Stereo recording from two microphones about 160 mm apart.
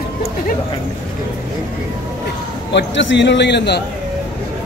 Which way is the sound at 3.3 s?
90° left.